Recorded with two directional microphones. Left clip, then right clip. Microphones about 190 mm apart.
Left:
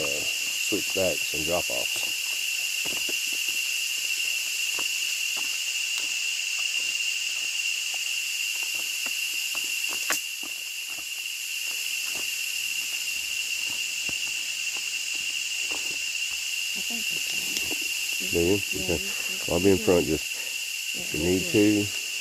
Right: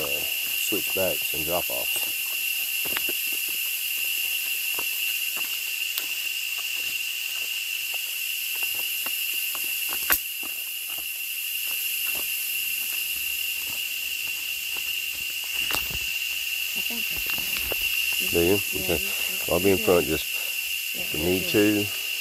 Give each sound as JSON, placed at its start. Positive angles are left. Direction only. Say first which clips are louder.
{"t": 18.3, "sound": "speech", "louder": "right 1 dB", "side_deg": 5}
{"t": 19.5, "sound": "speech", "louder": "right 1 dB", "side_deg": 25}
{"t": 21.5, "sound": "speech", "louder": "even", "side_deg": 5}